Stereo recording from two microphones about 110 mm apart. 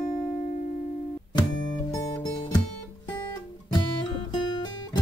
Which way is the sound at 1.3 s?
40° left (ahead or behind).